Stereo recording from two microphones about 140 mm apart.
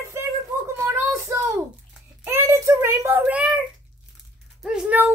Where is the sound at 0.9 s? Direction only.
20° right (ahead or behind).